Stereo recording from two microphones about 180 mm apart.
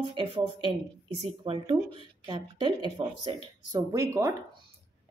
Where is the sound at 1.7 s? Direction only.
15° right (ahead or behind).